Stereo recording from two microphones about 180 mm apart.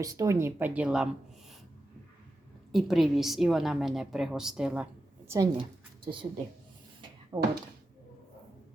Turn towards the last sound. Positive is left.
turn(degrees=-15)  # may be behind; listen again after turning